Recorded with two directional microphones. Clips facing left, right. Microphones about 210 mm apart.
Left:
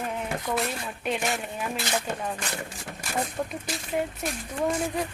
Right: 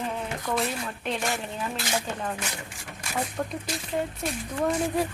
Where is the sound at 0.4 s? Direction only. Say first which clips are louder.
Right 3 dB; 5° left (ahead or behind).